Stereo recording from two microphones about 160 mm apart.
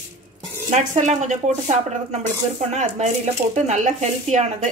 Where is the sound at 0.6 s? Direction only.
50° right (ahead or behind).